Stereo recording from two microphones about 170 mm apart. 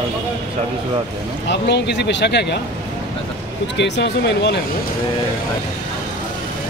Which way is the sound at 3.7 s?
90° left.